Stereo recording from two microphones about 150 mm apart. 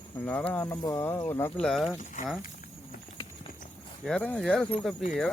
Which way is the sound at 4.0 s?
5° left (ahead or behind).